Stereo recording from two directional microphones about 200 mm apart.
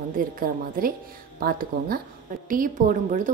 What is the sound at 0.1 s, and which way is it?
A woman's voice, 45° right (ahead or behind).